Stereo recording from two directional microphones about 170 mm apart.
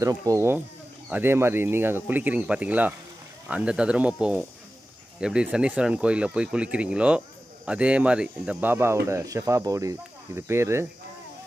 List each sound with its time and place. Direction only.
0.0 s speech: 20° right (ahead or behind)